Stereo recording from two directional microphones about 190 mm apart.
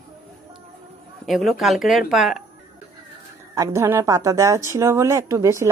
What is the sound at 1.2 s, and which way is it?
Speech, centre (ahead or behind).